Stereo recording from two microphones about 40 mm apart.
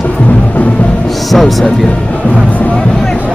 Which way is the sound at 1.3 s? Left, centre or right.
Centre.